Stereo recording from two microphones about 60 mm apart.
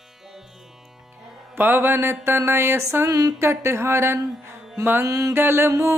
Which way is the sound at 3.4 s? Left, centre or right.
Right.